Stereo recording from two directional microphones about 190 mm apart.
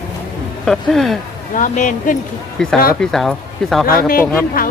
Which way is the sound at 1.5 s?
40° left (ahead or behind).